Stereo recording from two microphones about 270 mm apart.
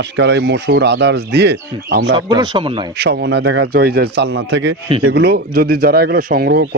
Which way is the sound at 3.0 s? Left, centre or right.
Right.